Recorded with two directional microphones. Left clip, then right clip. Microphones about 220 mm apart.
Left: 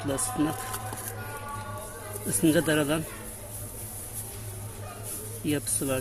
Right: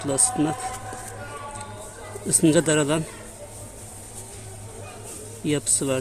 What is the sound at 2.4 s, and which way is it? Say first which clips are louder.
Speech: right 4 dB; 20° right (ahead or behind).